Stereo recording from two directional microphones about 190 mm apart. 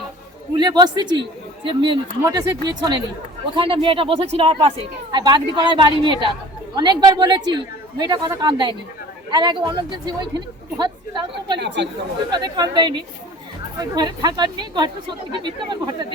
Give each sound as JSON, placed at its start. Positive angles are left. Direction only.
{"t": 0.5, "sound": "speech", "side_deg": -20}
{"t": 11.6, "sound": "speech", "side_deg": -70}
{"t": 12.3, "sound": "speech", "side_deg": -20}